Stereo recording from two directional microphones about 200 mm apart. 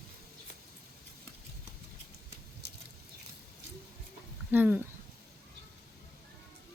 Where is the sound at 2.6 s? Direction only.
55° right (ahead or behind).